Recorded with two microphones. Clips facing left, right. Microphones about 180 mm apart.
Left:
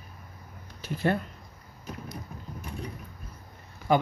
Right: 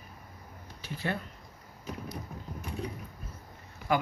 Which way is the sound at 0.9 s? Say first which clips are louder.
Left 7 dB; 50° left (ahead or behind).